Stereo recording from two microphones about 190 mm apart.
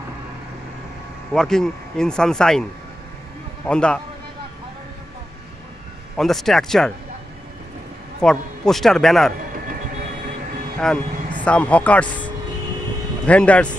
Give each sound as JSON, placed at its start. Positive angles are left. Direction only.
{"t": 1.3, "sound": "speech", "side_deg": 5}
{"t": 3.6, "sound": "speech", "side_deg": 5}
{"t": 6.1, "sound": "speech", "side_deg": 0}
{"t": 8.2, "sound": "speech", "side_deg": 5}
{"t": 10.8, "sound": "speech", "side_deg": 0}
{"t": 13.3, "sound": "speech", "side_deg": 5}